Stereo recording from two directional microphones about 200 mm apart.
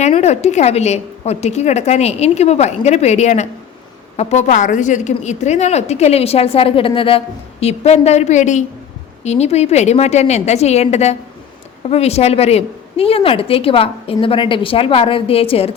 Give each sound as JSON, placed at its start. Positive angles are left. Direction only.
{"t": 0.0, "sound": "a woman's voice", "side_deg": 35}